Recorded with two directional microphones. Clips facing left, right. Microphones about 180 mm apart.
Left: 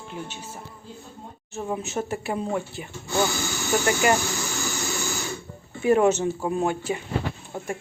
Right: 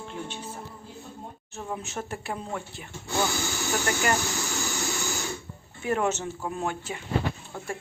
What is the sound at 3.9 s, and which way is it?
Speech, 10° left (ahead or behind).